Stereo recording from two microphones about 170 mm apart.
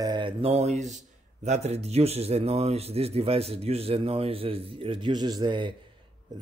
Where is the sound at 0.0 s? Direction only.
25° right (ahead or behind).